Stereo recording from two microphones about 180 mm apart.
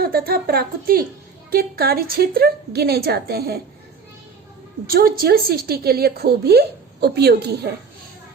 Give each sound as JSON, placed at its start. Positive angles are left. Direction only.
{"t": 0.0, "sound": "a woman's voice", "side_deg": -60}
{"t": 4.9, "sound": "a woman's voice", "side_deg": -55}